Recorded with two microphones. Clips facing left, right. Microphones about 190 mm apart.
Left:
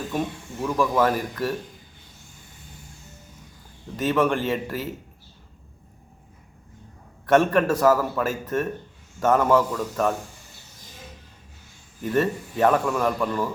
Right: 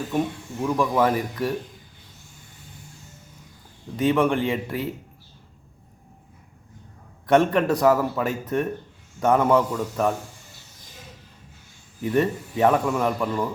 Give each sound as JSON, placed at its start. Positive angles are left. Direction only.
{"t": 0.6, "sound": "a man's voice", "side_deg": -15}
{"t": 3.9, "sound": "a man's voice", "side_deg": -15}
{"t": 7.3, "sound": "a man's voice", "side_deg": -15}
{"t": 12.0, "sound": "a man's voice", "side_deg": -15}